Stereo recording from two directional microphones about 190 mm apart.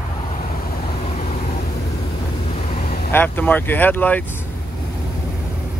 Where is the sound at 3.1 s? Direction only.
10° left (ahead or behind).